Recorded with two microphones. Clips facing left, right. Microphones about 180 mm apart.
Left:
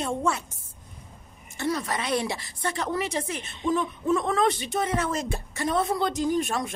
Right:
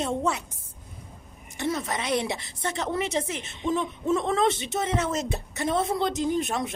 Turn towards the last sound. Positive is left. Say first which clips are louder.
# left 1 dB
turn(degrees=-20)  # may be behind; listen again after turning